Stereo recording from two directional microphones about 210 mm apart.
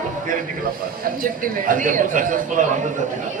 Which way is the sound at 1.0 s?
40° right (ahead or behind).